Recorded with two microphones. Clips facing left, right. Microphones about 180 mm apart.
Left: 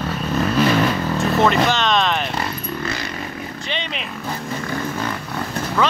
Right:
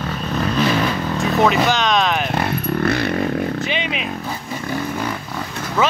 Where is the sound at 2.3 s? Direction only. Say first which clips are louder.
Right 5 dB; 60° right (ahead or behind).